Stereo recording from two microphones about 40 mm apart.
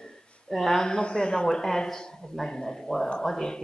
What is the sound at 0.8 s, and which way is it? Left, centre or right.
Speech, left.